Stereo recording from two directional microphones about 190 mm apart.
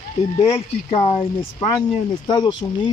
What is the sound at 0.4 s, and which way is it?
Speech, 30° left (ahead or behind).